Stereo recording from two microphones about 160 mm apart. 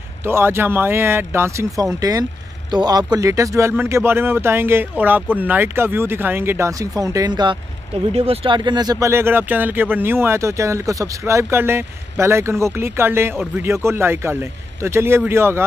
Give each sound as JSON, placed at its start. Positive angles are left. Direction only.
{"t": 0.2, "sound": "speech", "side_deg": -15}